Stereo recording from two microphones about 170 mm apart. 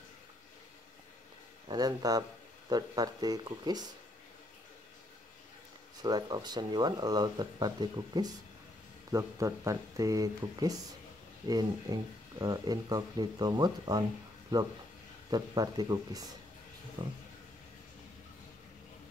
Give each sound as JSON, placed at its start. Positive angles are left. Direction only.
{"t": 1.7, "sound": "speech", "side_deg": -25}
{"t": 6.0, "sound": "speech", "side_deg": -25}
{"t": 15.3, "sound": "speech", "side_deg": -25}